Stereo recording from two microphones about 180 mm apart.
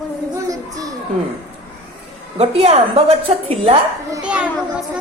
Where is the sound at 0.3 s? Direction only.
20° right (ahead or behind).